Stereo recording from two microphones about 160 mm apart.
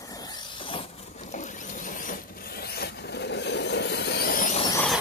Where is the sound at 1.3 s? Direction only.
50° left (ahead or behind); by 4.4 s 75° left (ahead or behind).